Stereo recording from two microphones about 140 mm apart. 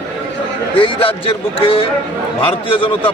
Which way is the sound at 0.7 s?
40° left (ahead or behind).